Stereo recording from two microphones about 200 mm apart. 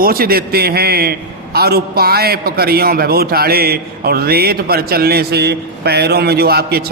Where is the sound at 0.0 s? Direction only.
50° right (ahead or behind).